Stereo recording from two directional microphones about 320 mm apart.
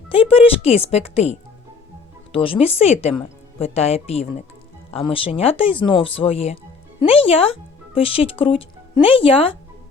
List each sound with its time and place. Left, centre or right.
0.1 s speech: centre